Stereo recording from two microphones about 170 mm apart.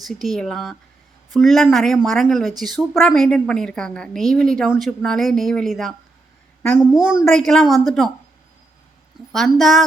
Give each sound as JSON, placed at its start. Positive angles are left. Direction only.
{"t": 0.1, "sound": "a woman's voice", "side_deg": 0}
{"t": 9.3, "sound": "a woman's voice", "side_deg": 0}